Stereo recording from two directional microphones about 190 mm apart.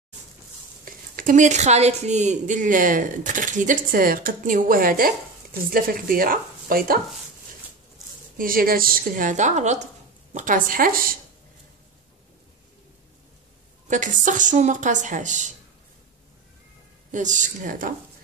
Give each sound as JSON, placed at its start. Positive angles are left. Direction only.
{"t": 1.1, "sound": "a woman's voice", "side_deg": -40}
{"t": 8.4, "sound": "a woman's voice", "side_deg": -50}
{"t": 13.8, "sound": "speech", "side_deg": -40}
{"t": 17.1, "sound": "speech", "side_deg": -40}